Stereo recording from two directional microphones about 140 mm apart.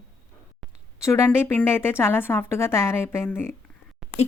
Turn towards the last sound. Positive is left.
turn(degrees=0)  # may be behind; listen again after turning